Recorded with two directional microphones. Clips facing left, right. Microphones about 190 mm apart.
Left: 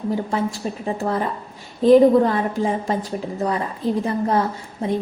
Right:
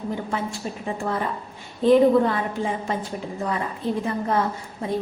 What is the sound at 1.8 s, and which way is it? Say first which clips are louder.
Speech: left 4 dB; 40° left (ahead or behind).